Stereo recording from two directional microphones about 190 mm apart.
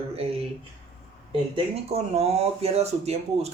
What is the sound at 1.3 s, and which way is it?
Speech, 30° right (ahead or behind).